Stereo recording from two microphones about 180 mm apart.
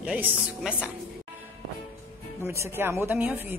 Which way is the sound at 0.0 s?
5° right (ahead or behind).